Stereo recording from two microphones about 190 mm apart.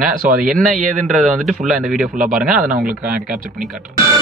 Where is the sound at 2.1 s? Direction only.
45° right (ahead or behind).